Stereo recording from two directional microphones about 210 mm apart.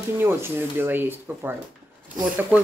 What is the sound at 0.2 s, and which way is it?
Speech, 10° right (ahead or behind).